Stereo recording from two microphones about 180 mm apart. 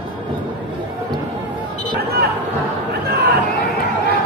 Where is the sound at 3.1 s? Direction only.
65° right (ahead or behind).